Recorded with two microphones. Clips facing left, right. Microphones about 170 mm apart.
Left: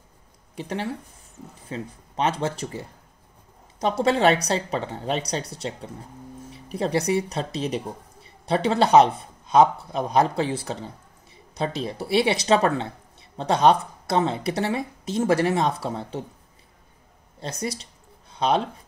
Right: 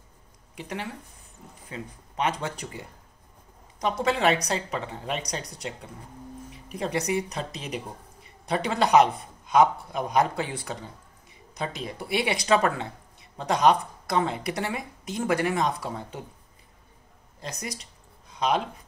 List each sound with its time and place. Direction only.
0.6 s speech: 30° left (ahead or behind)
4.0 s speech: 35° left (ahead or behind)
17.4 s speech: 30° left (ahead or behind)
18.3 s a sound: 30° left (ahead or behind)